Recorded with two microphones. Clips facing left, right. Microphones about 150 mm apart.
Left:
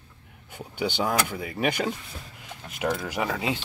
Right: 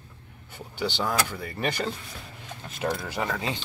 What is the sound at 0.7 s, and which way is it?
Speech, 15° left (ahead or behind).